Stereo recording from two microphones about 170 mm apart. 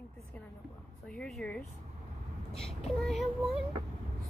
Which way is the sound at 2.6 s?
Centre (ahead or behind).